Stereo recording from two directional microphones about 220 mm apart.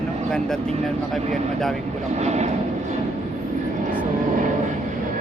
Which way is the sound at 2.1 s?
30° right (ahead or behind).